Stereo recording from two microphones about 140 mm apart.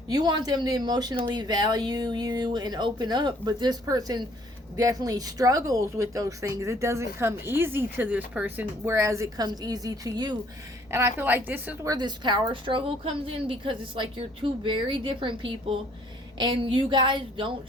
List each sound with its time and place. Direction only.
0.1 s speech: 30° right (ahead or behind)
10.9 s a woman's voice: 15° right (ahead or behind)
11.9 s speech: 30° right (ahead or behind)